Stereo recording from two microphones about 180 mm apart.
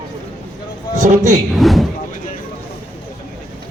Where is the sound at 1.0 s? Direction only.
45° right (ahead or behind).